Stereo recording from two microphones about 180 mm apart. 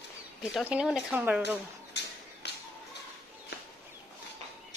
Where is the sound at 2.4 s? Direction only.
70° left (ahead or behind).